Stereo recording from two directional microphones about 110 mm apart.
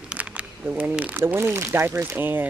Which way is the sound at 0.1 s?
10° right (ahead or behind).